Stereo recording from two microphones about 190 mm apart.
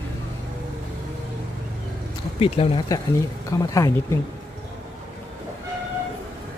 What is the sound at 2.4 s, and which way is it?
Speech, 30° left (ahead or behind).